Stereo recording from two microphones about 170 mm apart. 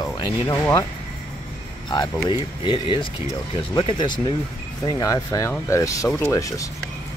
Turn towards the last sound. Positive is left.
turn(degrees=20)  # may be behind; listen again after turning